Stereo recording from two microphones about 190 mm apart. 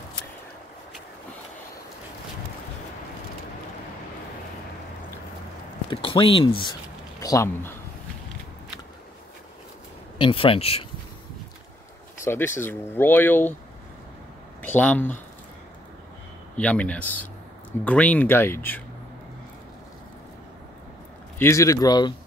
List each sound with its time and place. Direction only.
5.9 s speech: 25° left (ahead or behind)
7.2 s speech: 15° left (ahead or behind)
10.1 s speech: 30° left (ahead or behind)
12.3 s speech: 10° left (ahead or behind)
14.6 s speech: 10° left (ahead or behind)
16.5 s speech: 5° left (ahead or behind)
21.4 s speech: 15° left (ahead or behind)